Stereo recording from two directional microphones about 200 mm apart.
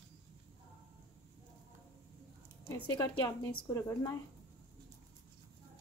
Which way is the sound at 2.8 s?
20° left (ahead or behind).